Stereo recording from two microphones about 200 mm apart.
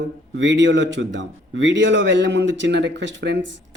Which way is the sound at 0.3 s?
65° right (ahead or behind).